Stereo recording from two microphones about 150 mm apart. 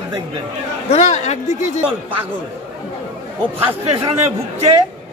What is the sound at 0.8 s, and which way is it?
Speech, 45° left (ahead or behind).